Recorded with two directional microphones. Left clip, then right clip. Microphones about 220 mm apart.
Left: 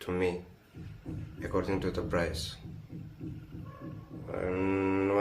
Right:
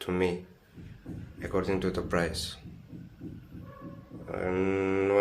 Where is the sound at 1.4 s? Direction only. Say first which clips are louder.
Right 2 dB; 35° right (ahead or behind).